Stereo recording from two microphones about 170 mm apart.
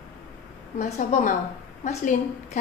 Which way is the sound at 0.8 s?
45° left (ahead or behind).